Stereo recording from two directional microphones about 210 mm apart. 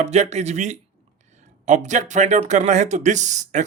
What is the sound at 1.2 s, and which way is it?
Speech, 35° right (ahead or behind).